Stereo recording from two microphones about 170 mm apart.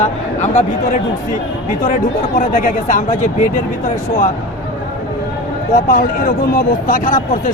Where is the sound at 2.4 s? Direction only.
50° left (ahead or behind).